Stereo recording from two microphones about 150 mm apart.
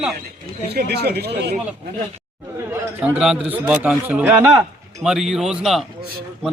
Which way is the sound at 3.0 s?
5° right (ahead or behind).